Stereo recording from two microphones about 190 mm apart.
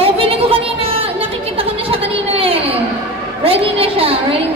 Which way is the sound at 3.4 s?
30° right (ahead or behind).